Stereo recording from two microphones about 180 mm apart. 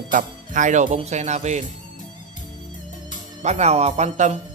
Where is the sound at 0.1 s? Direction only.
45° right (ahead or behind).